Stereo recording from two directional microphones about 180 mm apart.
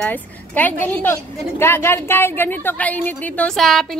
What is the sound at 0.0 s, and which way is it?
A woman's voice, 10° left (ahead or behind).